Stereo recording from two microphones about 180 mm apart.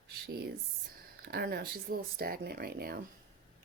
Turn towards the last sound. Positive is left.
turn(degrees=-55)  # may be behind; listen again after turning